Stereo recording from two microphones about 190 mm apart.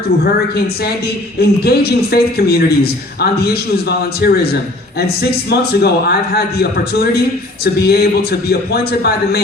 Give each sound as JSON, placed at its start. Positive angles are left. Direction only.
{"t": 1.4, "sound": "a man's voice", "side_deg": 55}